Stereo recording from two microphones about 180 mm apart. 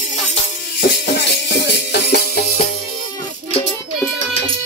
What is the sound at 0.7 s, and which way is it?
Music, 60° left (ahead or behind).